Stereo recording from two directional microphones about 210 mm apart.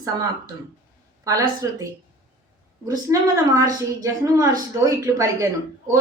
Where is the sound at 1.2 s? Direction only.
15° right (ahead or behind).